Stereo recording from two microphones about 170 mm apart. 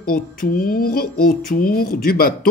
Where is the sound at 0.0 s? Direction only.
55° left (ahead or behind).